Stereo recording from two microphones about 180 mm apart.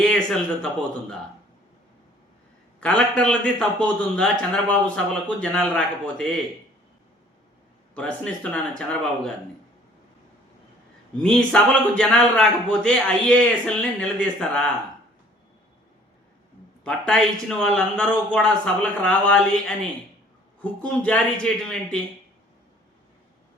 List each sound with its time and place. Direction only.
0.0 s speech: 5° left (ahead or behind)
2.8 s a man's voice: 5° left (ahead or behind)
7.9 s a man's voice: 5° left (ahead or behind)
11.2 s a man's voice: 5° left (ahead or behind)
16.8 s a man's voice: 5° left (ahead or behind)
20.6 s a man's voice: 5° left (ahead or behind)